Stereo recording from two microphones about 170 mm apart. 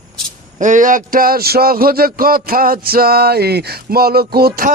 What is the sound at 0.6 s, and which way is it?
A man's voice, 50° right (ahead or behind).